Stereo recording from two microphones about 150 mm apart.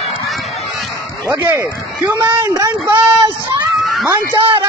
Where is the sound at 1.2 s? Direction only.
20° right (ahead or behind).